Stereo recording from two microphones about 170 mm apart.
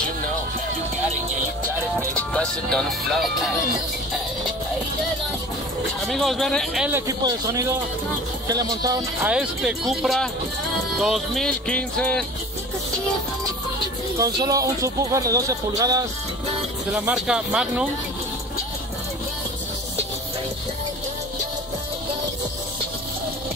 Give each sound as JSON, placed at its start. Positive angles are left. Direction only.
{"t": 2.1, "sound": "speech", "side_deg": 5}
{"t": 6.0, "sound": "music", "side_deg": 0}
{"t": 6.9, "sound": "speech", "side_deg": -20}
{"t": 9.2, "sound": "music", "side_deg": -5}
{"t": 14.1, "sound": "speech", "side_deg": -20}
{"t": 16.9, "sound": "music", "side_deg": -5}